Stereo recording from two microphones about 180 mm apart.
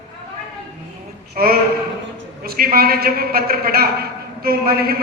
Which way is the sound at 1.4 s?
55° right (ahead or behind).